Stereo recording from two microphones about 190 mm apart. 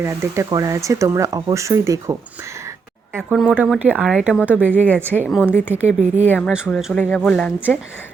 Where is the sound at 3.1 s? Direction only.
Centre (ahead or behind).